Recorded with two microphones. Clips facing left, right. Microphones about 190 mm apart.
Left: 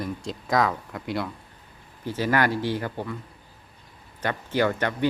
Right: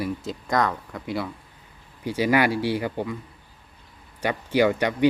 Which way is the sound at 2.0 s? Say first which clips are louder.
Right 3 dB; 10° right (ahead or behind).